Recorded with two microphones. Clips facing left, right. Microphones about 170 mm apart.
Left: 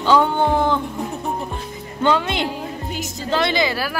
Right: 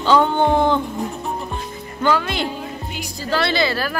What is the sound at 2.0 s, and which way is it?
A woman's voice, 25° left (ahead or behind).